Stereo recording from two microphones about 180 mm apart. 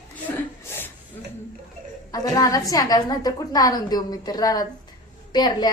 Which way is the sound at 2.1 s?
20° left (ahead or behind).